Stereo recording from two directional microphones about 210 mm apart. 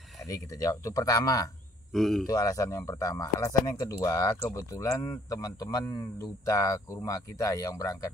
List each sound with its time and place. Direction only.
0.3 s speech: 15° left (ahead or behind)
1.9 s speech: centre (ahead or behind)
2.2 s speech: 15° left (ahead or behind)